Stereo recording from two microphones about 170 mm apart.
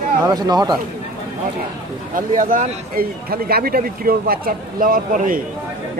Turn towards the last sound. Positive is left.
turn(degrees=-55)  # may be behind; listen again after turning